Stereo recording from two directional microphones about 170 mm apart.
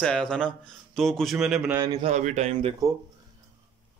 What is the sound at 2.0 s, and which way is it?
Speech, 40° right (ahead or behind).